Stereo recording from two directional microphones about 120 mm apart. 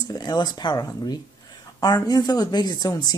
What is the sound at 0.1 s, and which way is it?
Speech, 35° left (ahead or behind).